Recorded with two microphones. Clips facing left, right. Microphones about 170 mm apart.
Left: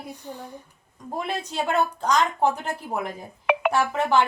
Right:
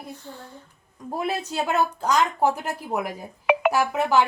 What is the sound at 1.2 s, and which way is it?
Speech, 5° right (ahead or behind).